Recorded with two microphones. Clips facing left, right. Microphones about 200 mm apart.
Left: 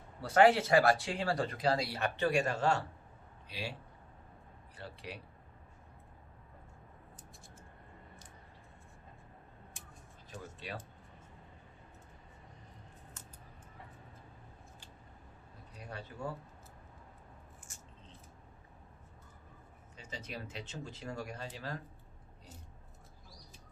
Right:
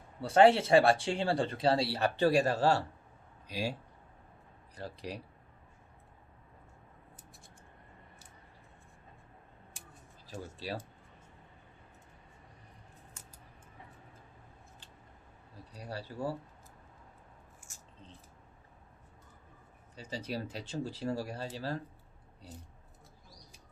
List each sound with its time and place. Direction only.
0.2 s a man's voice: 25° right (ahead or behind); by 3.8 s 40° right (ahead or behind)
4.8 s speech: 40° right (ahead or behind)
10.2 s speech: 30° right (ahead or behind)
15.8 s speech: 35° right (ahead or behind)
20.0 s speech: 35° right (ahead or behind)